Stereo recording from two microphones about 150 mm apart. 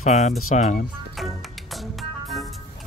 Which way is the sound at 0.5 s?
60° left (ahead or behind).